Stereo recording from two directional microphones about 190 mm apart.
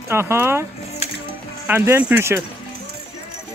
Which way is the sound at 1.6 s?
10° right (ahead or behind).